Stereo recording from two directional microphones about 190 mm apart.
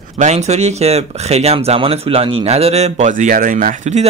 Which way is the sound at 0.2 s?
35° right (ahead or behind).